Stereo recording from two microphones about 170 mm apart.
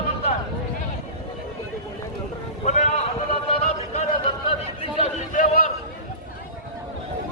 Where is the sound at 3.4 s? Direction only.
35° left (ahead or behind).